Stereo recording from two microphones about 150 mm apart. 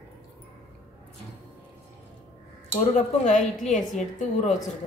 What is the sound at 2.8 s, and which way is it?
Speech, 55° left (ahead or behind).